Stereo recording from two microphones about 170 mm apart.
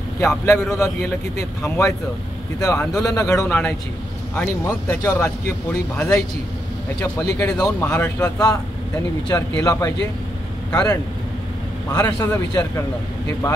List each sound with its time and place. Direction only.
0.2 s a man's voice: 15° left (ahead or behind)
4.8 s a man's voice: 15° left (ahead or behind)
7.2 s a man's voice: 15° left (ahead or behind)